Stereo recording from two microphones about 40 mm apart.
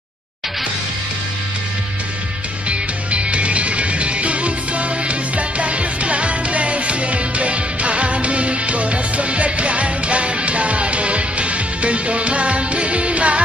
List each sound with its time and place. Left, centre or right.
2.7 s music: right